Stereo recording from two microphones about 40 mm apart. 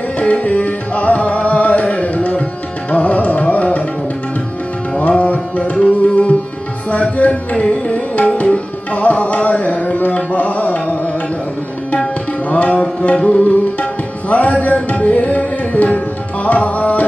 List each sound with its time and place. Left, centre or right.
0.2 s music: left
4.9 s music: left
5.9 s tabla: left